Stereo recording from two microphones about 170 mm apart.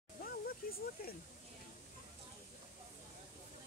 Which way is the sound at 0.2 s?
60° left (ahead or behind).